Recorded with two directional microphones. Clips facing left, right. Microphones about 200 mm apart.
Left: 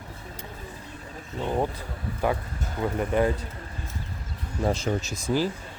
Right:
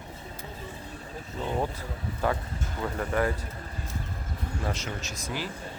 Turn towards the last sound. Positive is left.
turn(degrees=40)  # may be behind; listen again after turning